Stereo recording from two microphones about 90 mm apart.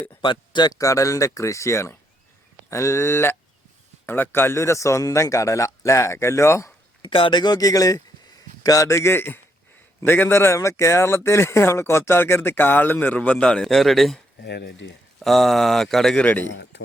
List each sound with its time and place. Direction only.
0.2 s speech: 60° left (ahead or behind)
0.8 s a man's voice: 35° left (ahead or behind)
7.0 s a man's voice: 75° left (ahead or behind); by 14.2 s 5° left (ahead or behind)
15.2 s speech: 5° left (ahead or behind)
16.2 s a man's voice: 20° left (ahead or behind)